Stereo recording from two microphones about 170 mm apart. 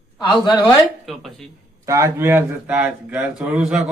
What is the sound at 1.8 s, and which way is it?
Speech, 15° right (ahead or behind).